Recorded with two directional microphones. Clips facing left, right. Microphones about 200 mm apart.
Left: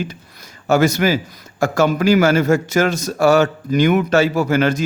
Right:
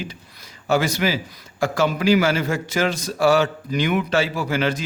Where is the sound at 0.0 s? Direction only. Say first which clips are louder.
Left 6 dB; 45° left (ahead or behind).